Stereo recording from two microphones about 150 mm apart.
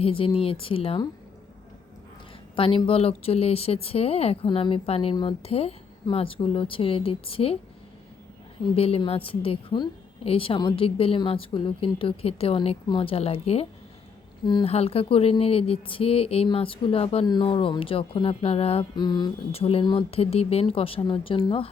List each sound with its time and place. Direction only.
0.0 s a woman's voice: 35° left (ahead or behind)
2.6 s a woman's voice: 35° left (ahead or behind)
8.7 s a woman's voice: 40° left (ahead or behind)
14.4 s a woman's voice: 30° left (ahead or behind)
14.7 s a woman's voice: 40° left (ahead or behind)
19.5 s a woman's voice: 40° left (ahead or behind)